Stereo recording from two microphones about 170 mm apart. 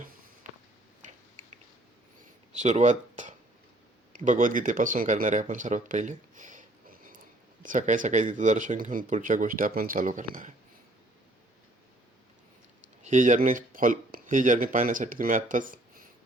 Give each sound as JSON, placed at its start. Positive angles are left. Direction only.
{"t": 0.4, "sound": "a sound", "side_deg": -45}
{"t": 2.6, "sound": "speech", "side_deg": -45}
{"t": 13.0, "sound": "speech", "side_deg": -45}